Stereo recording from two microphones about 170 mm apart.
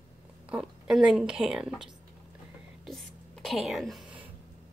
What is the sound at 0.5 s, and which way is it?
A woman's voice, 5° right (ahead or behind).